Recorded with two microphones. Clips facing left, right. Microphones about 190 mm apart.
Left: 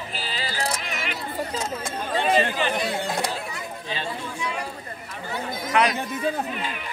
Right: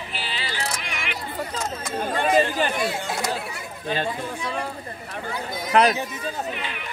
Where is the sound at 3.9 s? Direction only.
50° right (ahead or behind).